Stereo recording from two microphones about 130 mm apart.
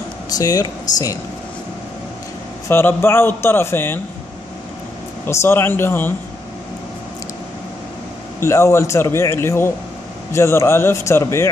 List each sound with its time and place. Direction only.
0.4 s a man's voice: 30° left (ahead or behind)
2.7 s a man's voice: 20° left (ahead or behind)
5.2 s a man's voice: 20° left (ahead or behind)
8.4 s a man's voice: 20° left (ahead or behind)